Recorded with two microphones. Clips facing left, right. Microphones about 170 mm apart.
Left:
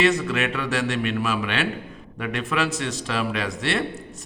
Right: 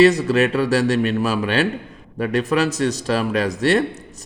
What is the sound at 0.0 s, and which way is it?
A man's voice, 35° right (ahead or behind).